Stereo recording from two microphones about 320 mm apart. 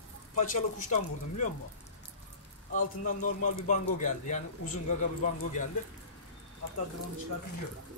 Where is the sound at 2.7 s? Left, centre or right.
Left.